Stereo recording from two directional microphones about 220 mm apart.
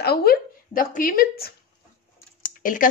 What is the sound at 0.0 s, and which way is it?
Speech, 45° left (ahead or behind).